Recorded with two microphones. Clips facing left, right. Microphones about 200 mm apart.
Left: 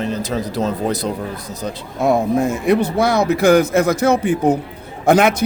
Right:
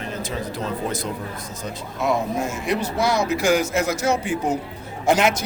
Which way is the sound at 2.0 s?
55° left (ahead or behind).